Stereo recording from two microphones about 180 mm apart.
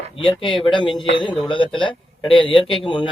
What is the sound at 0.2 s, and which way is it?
A man's voice, 30° left (ahead or behind).